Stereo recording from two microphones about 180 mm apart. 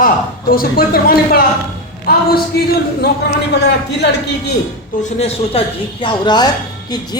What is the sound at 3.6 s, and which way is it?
Speech, 65° left (ahead or behind).